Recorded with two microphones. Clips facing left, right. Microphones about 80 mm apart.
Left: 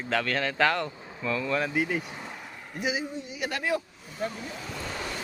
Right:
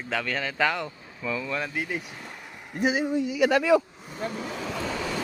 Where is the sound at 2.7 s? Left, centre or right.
Right.